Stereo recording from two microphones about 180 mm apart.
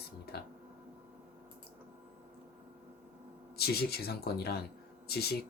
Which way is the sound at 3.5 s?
60° left (ahead or behind).